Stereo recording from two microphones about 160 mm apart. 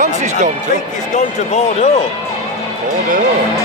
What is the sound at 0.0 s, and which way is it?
Speech, 50° right (ahead or behind).